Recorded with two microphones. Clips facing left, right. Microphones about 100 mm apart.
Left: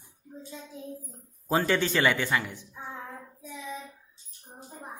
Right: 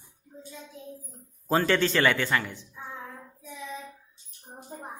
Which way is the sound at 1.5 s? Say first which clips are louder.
Right 2 dB; 15° left (ahead or behind).